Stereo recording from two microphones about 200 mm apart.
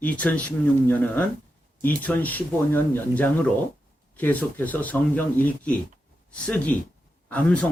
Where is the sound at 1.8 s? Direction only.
10° left (ahead or behind).